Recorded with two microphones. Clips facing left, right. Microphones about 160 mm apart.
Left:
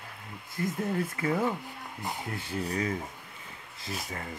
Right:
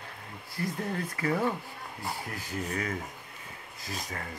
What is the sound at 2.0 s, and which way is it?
Dog, 20° left (ahead or behind).